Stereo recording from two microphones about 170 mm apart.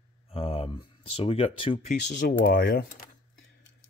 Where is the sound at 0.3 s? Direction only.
35° left (ahead or behind).